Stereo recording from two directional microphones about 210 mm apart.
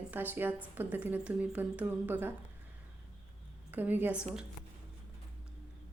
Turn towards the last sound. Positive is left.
turn(degrees=-10)  # may be behind; listen again after turning